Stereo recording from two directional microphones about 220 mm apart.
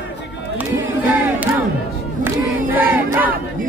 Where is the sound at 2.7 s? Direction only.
10° right (ahead or behind).